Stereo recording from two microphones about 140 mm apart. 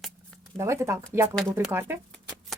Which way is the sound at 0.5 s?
20° right (ahead or behind).